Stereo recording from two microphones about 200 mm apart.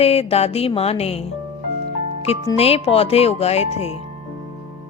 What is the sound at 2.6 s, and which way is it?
A woman's voice, 30° left (ahead or behind).